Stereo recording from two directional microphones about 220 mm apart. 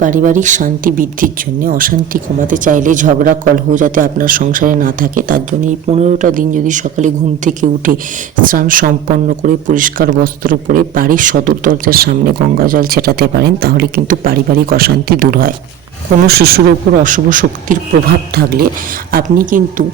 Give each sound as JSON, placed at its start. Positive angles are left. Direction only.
{"t": 0.0, "sound": "speech", "side_deg": -35}